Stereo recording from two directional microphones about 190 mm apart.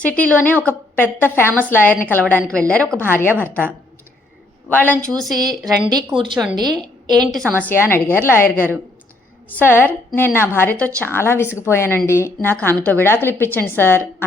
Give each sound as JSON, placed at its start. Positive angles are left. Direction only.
{"t": 0.0, "sound": "a woman's voice", "side_deg": 5}
{"t": 5.3, "sound": "a woman's voice", "side_deg": -20}
{"t": 7.3, "sound": "a woman's voice", "side_deg": 0}